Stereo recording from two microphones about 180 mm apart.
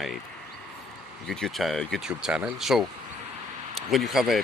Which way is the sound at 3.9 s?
Centre (ahead or behind).